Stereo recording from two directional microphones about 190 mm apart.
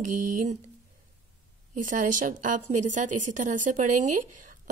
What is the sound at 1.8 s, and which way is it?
A woman's voice, 45° right (ahead or behind).